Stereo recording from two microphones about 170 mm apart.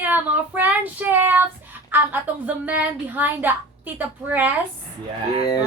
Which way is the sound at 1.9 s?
10° right (ahead or behind).